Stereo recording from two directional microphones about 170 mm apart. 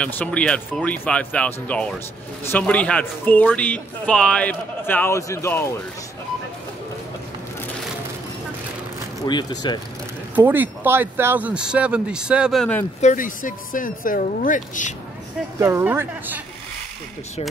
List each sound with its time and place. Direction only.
0.0 s speech: 5° left (ahead or behind)
9.2 s speech: 25° left (ahead or behind)
10.3 s speech: 10° right (ahead or behind); by 12.8 s 5° left (ahead or behind)
13.0 s speech: 50° left (ahead or behind)
15.6 s speech: 15° right (ahead or behind)